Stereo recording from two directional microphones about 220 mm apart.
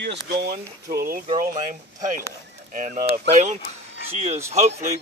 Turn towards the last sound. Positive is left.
turn(degrees=-30)  # may be behind; listen again after turning